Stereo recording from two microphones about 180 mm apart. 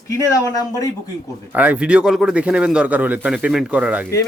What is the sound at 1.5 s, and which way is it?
Speech, 10° right (ahead or behind).